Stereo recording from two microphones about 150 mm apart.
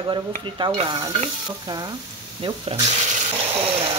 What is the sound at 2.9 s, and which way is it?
Water tap, 50° right (ahead or behind).